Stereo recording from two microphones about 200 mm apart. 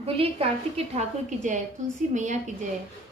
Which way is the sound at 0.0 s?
30° right (ahead or behind).